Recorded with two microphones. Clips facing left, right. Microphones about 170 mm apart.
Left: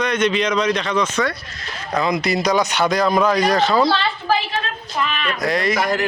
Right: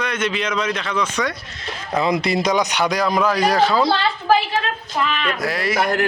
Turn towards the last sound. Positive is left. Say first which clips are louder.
# left 3 dB
turn(degrees=-5)  # may be behind; listen again after turning